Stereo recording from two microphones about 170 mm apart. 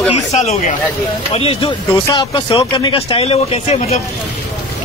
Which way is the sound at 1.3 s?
30° left (ahead or behind).